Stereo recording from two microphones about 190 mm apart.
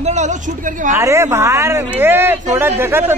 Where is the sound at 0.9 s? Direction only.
15° right (ahead or behind).